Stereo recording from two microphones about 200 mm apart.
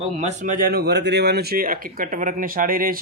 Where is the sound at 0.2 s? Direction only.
35° right (ahead or behind).